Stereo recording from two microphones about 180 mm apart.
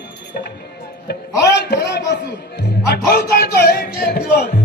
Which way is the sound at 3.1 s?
60° left (ahead or behind).